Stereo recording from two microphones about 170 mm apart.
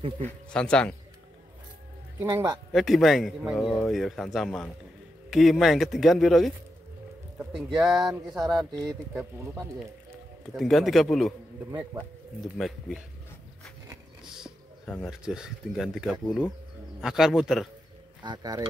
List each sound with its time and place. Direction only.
0.2 s a man's voice: 5° left (ahead or behind)
2.2 s speech: 15° right (ahead or behind)
2.7 s a man's voice: centre (ahead or behind)
7.8 s a man's voice: centre (ahead or behind)
8.4 s speech: 25° right (ahead or behind)
9.1 s speech: 15° right (ahead or behind)
10.5 s a man's voice: centre (ahead or behind)
12.5 s a man's voice: centre (ahead or behind)
15.0 s a man's voice: 5° right (ahead or behind)
18.2 s speech: 25° right (ahead or behind)